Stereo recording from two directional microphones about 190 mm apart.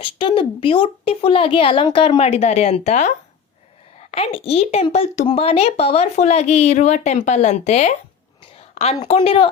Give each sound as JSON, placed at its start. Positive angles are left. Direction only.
{"t": 0.0, "sound": "a woman's voice", "side_deg": 25}
{"t": 8.7, "sound": "a sound", "side_deg": 35}
{"t": 9.0, "sound": "a woman's voice", "side_deg": 30}